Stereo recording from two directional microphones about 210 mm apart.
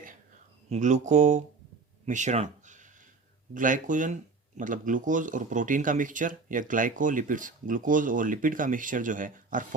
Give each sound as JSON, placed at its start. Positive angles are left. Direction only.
{"t": 0.7, "sound": "speech", "side_deg": -35}
{"t": 2.0, "sound": "a sound", "side_deg": -35}
{"t": 3.5, "sound": "speech", "side_deg": -40}